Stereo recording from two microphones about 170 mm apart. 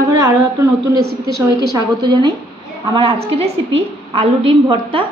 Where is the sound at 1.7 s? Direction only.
25° right (ahead or behind).